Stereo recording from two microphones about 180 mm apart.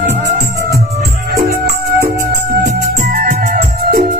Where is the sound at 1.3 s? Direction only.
60° right (ahead or behind).